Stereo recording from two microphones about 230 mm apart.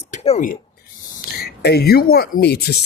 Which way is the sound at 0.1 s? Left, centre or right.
Left.